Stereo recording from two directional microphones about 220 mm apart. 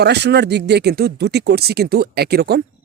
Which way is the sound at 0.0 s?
50° right (ahead or behind).